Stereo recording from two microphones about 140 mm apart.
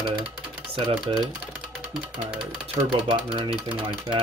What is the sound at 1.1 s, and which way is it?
Speech, 40° right (ahead or behind).